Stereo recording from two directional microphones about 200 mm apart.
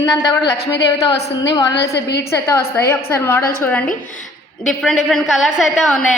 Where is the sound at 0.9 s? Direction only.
20° left (ahead or behind).